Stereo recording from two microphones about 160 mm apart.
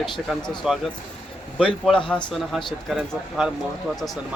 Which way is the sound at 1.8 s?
5° left (ahead or behind).